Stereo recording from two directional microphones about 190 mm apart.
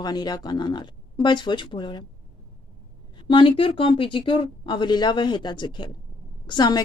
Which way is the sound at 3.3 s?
25° left (ahead or behind).